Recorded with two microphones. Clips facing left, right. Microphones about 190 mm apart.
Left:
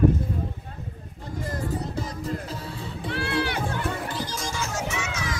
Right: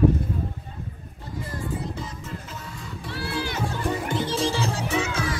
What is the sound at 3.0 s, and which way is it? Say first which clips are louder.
Music: left 3 dB; 60° left (ahead or behind).